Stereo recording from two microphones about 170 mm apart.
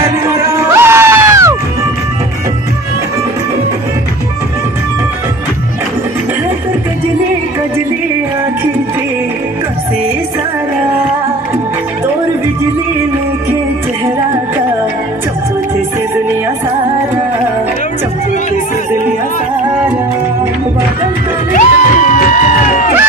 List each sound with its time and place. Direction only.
0.0 s music: 15° right (ahead or behind)
21.5 s music: 50° left (ahead or behind)